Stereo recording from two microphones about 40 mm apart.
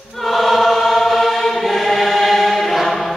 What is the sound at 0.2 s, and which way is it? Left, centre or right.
Choir, centre.